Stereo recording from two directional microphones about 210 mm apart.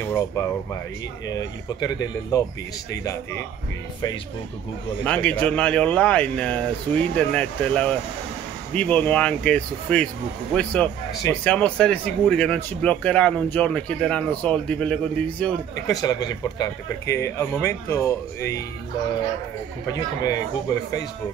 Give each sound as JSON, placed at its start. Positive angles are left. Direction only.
{"t": 0.0, "sound": "speech", "side_deg": 10}
{"t": 5.0, "sound": "speech", "side_deg": 5}
{"t": 15.9, "sound": "speech", "side_deg": 20}